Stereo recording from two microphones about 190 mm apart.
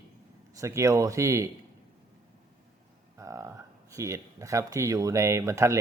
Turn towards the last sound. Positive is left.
turn(degrees=-15)  # may be behind; listen again after turning